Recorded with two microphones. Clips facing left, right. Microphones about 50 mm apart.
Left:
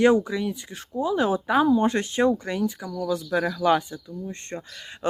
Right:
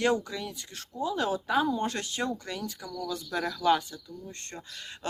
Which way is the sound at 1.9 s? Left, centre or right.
Left.